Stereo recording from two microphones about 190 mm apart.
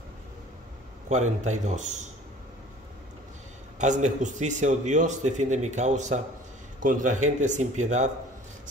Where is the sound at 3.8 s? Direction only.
40° right (ahead or behind).